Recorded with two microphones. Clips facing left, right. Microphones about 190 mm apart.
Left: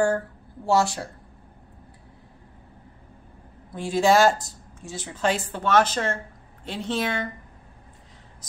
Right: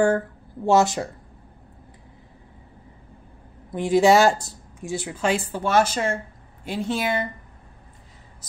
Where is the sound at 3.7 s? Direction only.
20° right (ahead or behind).